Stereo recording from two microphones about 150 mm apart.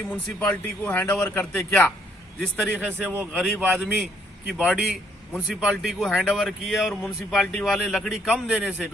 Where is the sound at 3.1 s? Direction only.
15° right (ahead or behind).